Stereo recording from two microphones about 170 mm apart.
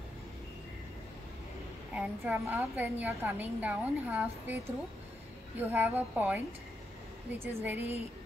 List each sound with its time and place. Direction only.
2.0 s a woman's voice: 10° right (ahead or behind)
5.6 s a woman's voice: 10° right (ahead or behind)